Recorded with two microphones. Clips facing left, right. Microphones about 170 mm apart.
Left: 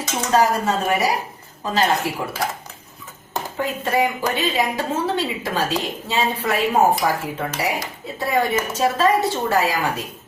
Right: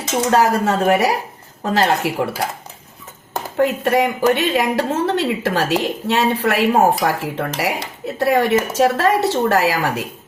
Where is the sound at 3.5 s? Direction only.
75° right (ahead or behind).